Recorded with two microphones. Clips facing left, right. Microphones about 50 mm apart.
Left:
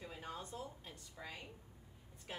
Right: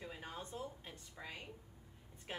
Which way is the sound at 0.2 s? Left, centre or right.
Right.